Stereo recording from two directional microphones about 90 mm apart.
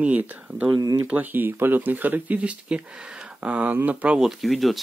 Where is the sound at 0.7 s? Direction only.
40° right (ahead or behind).